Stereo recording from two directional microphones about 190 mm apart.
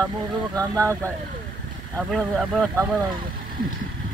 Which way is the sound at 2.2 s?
Centre (ahead or behind).